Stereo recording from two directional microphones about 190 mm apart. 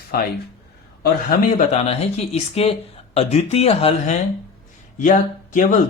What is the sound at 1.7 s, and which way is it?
A woman's voice, 35° left (ahead or behind).